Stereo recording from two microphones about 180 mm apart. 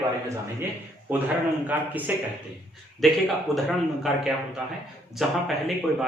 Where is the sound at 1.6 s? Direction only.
10° right (ahead or behind).